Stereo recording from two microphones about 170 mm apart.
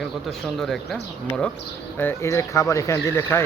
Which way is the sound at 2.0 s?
15° left (ahead or behind).